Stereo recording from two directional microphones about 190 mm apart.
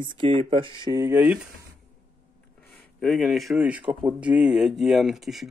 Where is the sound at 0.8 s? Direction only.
15° right (ahead or behind).